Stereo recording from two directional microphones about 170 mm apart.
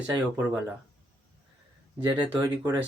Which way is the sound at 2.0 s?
25° right (ahead or behind).